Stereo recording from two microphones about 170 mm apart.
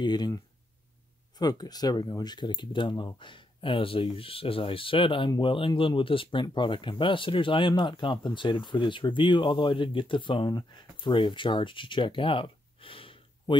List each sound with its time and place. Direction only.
0.0 s speech: 25° left (ahead or behind)
1.4 s speech: 25° left (ahead or behind)